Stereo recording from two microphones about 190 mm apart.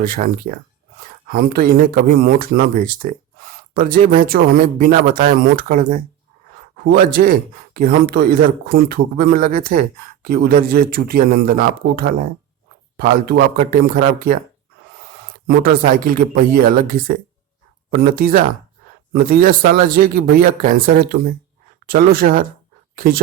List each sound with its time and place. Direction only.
0.0 s speech: 45° right (ahead or behind)
15.4 s speech: 50° right (ahead or behind)